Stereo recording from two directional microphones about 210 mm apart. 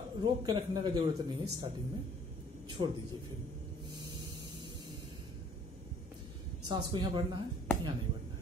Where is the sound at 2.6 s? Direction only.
20° right (ahead or behind).